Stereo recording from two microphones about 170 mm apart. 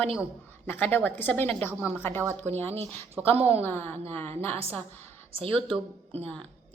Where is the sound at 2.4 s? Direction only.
40° right (ahead or behind).